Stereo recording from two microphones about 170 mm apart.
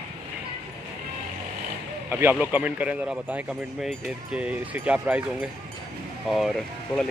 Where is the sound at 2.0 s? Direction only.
10° right (ahead or behind).